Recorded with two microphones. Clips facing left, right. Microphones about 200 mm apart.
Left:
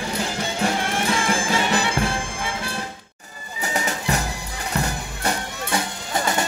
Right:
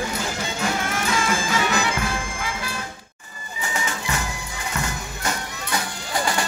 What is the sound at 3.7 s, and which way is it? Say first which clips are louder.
Music: left 4 dB; 40° left (ahead or behind).